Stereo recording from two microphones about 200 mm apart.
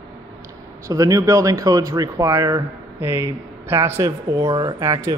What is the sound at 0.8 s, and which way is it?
Speech, 15° right (ahead or behind).